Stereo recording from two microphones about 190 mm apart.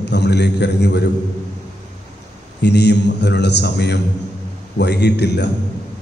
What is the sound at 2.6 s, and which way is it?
A man's voice, 65° left (ahead or behind).